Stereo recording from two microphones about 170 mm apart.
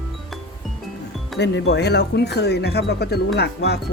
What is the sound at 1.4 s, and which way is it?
Speech, 85° left.